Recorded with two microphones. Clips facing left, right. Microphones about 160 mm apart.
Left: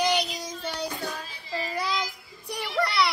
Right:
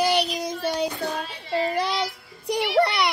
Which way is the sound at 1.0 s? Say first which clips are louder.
Right 6 dB; 65° right (ahead or behind).